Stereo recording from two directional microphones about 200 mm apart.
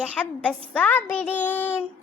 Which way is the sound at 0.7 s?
5° left (ahead or behind).